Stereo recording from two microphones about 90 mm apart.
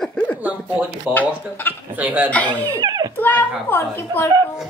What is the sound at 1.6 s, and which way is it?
Speech, 25° left (ahead or behind).